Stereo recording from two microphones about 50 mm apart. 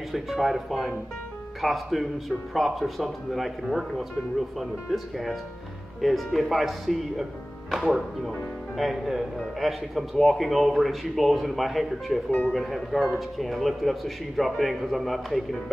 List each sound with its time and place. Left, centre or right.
0.1 s speech: centre
8.7 s speech: centre
12.3 s speech: left
12.5 s speech: centre